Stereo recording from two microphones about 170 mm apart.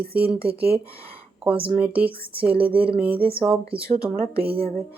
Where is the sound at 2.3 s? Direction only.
30° right (ahead or behind).